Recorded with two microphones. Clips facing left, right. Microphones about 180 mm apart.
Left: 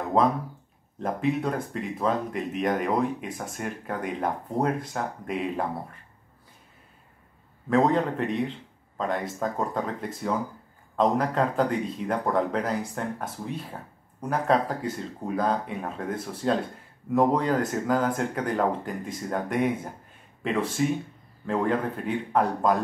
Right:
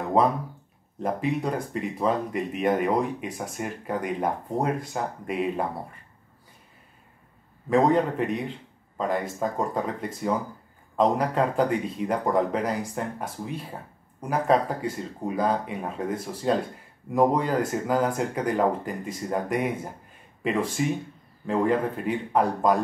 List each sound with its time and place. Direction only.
0.9 s speech: centre (ahead or behind)
7.7 s a man's voice: 5° right (ahead or behind)
14.3 s speech: 5° right (ahead or behind)